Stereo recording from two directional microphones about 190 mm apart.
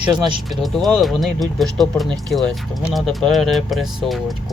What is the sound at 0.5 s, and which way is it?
Speech, centre (ahead or behind).